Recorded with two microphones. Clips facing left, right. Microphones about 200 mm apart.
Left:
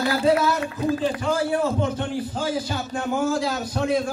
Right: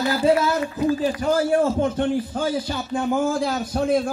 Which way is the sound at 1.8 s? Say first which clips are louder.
Right 4 dB; 50° right (ahead or behind).